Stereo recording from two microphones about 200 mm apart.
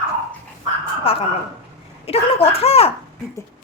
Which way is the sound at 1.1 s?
30° left (ahead or behind).